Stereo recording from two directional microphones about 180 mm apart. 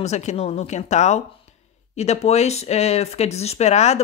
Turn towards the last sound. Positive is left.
turn(degrees=40)  # may be behind; listen again after turning